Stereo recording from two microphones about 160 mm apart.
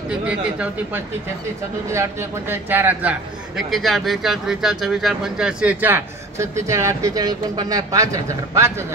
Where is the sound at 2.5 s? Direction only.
15° right (ahead or behind).